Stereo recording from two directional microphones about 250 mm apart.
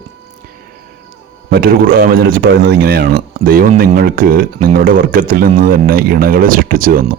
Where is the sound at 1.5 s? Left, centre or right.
Right.